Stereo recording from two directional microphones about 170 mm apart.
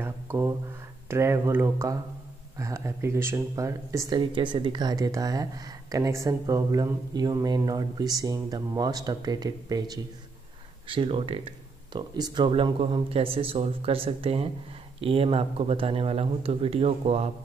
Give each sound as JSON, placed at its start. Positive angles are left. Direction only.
{"t": 0.0, "sound": "a sound", "side_deg": -15}
{"t": 1.0, "sound": "speech", "side_deg": -15}
{"t": 10.9, "sound": "speech", "side_deg": -35}